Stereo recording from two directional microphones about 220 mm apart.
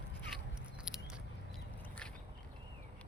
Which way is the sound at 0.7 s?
Centre (ahead or behind).